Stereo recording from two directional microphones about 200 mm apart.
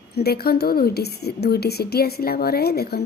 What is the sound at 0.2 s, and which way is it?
A woman's voice, 50° left (ahead or behind).